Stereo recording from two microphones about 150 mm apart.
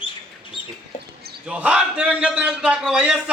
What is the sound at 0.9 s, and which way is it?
Basketball bounce, 55° left (ahead or behind).